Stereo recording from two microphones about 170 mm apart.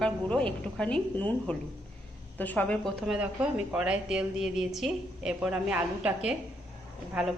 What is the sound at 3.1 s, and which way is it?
A woman's voice, 10° right (ahead or behind).